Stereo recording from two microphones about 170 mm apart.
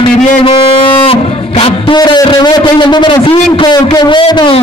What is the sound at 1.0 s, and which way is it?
Music, 35° left (ahead or behind).